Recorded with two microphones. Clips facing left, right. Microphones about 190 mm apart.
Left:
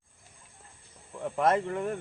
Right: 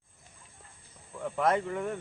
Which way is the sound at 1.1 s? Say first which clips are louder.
Left 2 dB; 5° left (ahead or behind).